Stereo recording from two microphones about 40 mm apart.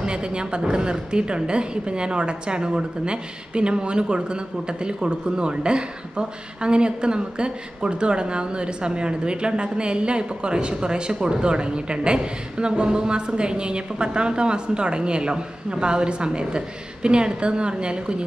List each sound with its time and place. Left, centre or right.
0.0 s a woman's voice: right